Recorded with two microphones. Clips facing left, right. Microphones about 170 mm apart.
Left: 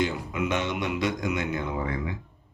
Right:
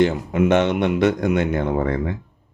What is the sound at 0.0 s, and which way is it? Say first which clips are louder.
Speech: right 10 dB; 60° right (ahead or behind).